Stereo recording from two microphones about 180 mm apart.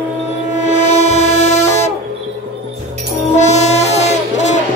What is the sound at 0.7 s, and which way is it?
Train, 40° left (ahead or behind).